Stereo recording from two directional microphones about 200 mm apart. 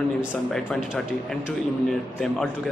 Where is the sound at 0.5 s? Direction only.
5° left (ahead or behind).